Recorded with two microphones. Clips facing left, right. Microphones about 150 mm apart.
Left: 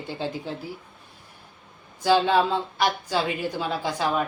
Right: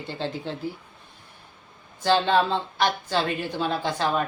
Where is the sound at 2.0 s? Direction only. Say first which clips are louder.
Left 1 dB; 10° left (ahead or behind).